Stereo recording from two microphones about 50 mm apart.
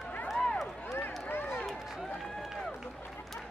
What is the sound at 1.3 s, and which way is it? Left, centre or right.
Run, left.